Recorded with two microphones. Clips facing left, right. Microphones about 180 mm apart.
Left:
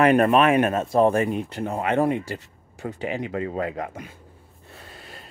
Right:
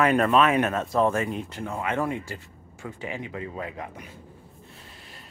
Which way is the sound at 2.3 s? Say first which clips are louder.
Left 5 dB; 40° left (ahead or behind).